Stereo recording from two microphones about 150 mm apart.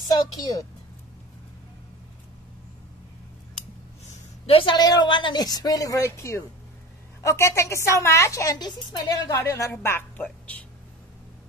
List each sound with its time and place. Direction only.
0.4 s a woman's voice: 25° left (ahead or behind)
4.5 s a woman's voice: 35° left (ahead or behind); by 10.6 s 10° left (ahead or behind)